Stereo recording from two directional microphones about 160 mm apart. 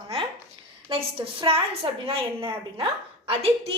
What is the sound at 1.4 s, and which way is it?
A woman's voice, 35° right (ahead or behind).